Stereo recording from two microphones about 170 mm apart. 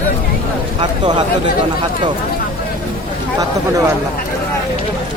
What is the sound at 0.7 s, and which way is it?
Speech, 30° right (ahead or behind).